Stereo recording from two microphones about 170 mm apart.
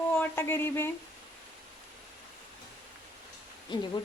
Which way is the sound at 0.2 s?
10° left (ahead or behind).